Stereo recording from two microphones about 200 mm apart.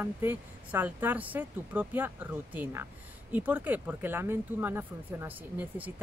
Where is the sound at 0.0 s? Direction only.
10° right (ahead or behind).